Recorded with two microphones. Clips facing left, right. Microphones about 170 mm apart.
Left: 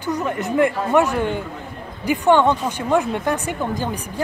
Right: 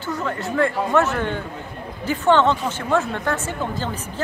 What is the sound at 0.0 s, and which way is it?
Speech, 15° left (ahead or behind).